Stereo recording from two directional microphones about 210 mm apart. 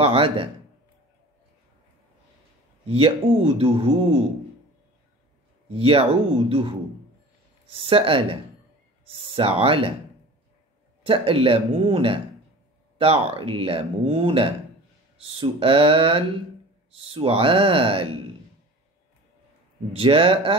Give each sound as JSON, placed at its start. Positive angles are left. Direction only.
{"t": 0.0, "sound": "speech", "side_deg": -25}
{"t": 2.9, "sound": "speech", "side_deg": -25}
{"t": 5.7, "sound": "speech", "side_deg": -25}
{"t": 11.1, "sound": "speech", "side_deg": -25}
{"t": 19.9, "sound": "speech", "side_deg": -25}